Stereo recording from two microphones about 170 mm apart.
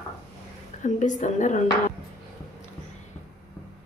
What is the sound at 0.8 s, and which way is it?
Speech, 45° left (ahead or behind).